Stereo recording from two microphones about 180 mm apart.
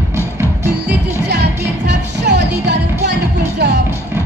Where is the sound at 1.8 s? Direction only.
75° right (ahead or behind).